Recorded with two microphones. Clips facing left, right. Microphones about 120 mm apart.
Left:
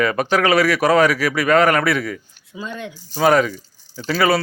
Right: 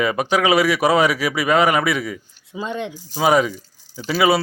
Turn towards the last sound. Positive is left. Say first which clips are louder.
# right 1 dB
turn(degrees=-10)  # may be behind; listen again after turning